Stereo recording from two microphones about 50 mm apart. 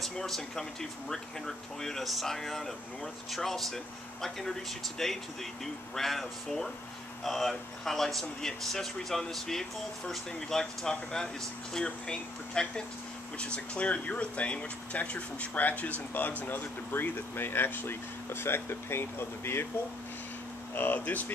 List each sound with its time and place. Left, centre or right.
0.0 s speech: centre; by 19.7 s left
20.7 s speech: left